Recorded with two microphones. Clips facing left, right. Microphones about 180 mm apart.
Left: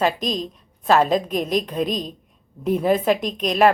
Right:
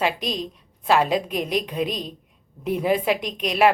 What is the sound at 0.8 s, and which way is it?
A woman's voice, 45° left (ahead or behind).